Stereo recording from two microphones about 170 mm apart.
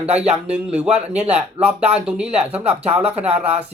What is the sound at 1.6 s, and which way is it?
Speech, 35° right (ahead or behind).